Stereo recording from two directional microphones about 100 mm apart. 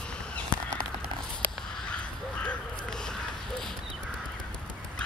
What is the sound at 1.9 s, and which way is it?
Crow, 10° left (ahead or behind).